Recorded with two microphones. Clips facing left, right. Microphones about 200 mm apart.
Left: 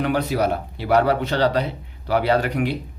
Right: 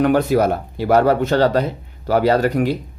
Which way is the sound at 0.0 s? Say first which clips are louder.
Right 6 dB; 50° right (ahead or behind).